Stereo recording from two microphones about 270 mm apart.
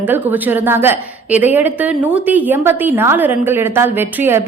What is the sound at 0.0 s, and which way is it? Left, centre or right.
A woman's voice, centre.